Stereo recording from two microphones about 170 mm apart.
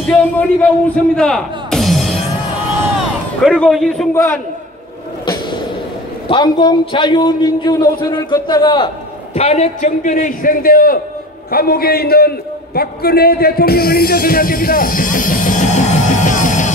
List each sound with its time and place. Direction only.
0.1 s speech: 5° left (ahead or behind)
3.4 s a man's voice: 5° left (ahead or behind)
4.1 s a man's voice: 15° left (ahead or behind)
5.2 s vehicle: 30° left (ahead or behind)
6.2 s a man's voice: 30° left (ahead or behind); by 16.7 s 45° left (ahead or behind)